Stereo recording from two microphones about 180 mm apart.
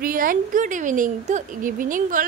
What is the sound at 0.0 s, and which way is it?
A woman's voice, 50° right (ahead or behind).